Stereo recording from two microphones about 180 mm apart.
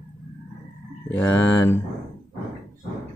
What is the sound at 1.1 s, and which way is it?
Speech, 10° left (ahead or behind).